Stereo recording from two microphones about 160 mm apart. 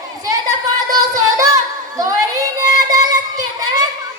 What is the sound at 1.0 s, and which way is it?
Singing, 20° right (ahead or behind).